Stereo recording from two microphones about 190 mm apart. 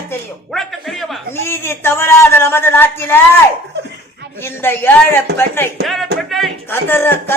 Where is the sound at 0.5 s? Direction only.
Centre (ahead or behind).